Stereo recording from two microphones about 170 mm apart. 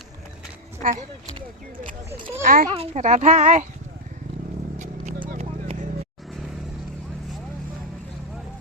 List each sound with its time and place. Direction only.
0.8 s speech: 45° right (ahead or behind)
2.4 s a child's voice: 55° right (ahead or behind)
2.7 s speech: 40° right (ahead or behind)
5.4 s vehicle: 40° right (ahead or behind)